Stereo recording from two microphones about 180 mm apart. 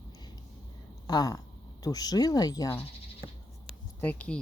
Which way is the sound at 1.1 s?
20° left (ahead or behind).